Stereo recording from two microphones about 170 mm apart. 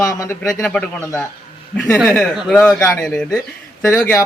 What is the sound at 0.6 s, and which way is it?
Speech, 5° left (ahead or behind).